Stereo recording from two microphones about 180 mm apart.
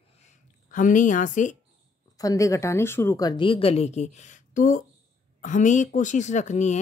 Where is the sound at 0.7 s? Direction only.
45° left (ahead or behind).